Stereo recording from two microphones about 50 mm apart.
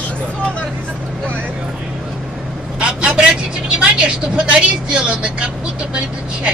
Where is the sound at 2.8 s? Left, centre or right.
Right.